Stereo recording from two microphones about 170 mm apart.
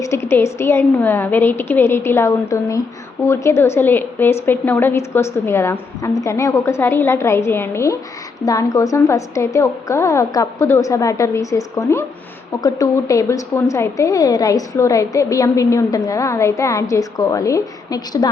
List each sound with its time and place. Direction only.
0.0 s a woman's voice: 15° left (ahead or behind)